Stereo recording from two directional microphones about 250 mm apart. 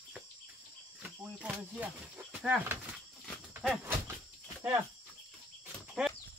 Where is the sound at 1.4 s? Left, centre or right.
Centre.